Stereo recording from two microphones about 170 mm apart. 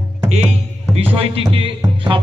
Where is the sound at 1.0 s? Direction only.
35° right (ahead or behind).